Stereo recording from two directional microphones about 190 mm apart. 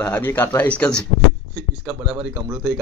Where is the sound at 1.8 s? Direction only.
15° right (ahead or behind).